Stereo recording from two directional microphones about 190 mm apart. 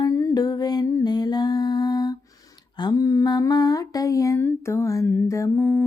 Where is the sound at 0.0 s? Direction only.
15° left (ahead or behind).